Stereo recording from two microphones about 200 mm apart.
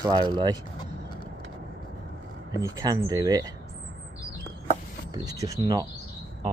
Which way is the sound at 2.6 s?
20° right (ahead or behind).